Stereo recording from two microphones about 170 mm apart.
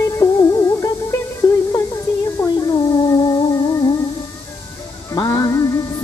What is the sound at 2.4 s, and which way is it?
Humming, 20° left (ahead or behind).